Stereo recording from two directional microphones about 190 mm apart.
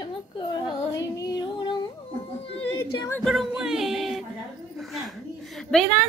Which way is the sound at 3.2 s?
Centre (ahead or behind).